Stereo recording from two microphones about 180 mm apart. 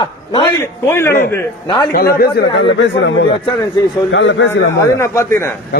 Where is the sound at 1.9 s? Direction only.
55° left (ahead or behind); by 3.1 s 85° left.